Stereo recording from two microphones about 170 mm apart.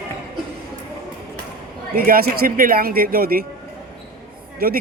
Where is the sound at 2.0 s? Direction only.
60° right (ahead or behind).